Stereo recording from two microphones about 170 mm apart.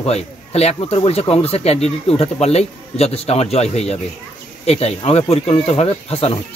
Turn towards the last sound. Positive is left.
turn(degrees=35)  # may be behind; listen again after turning